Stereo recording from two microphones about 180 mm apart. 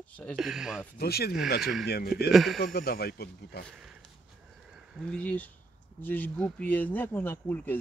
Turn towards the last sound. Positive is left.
turn(degrees=10)  # may be behind; listen again after turning